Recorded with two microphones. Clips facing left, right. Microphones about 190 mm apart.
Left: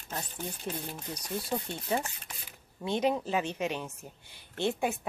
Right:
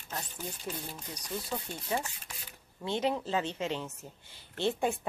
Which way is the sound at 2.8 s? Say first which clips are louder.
Left 2 dB; 15° left (ahead or behind).